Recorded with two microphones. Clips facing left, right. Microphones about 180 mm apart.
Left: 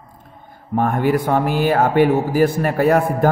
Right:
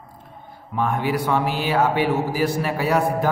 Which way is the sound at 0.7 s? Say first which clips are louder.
Left 5 dB; 50° left (ahead or behind).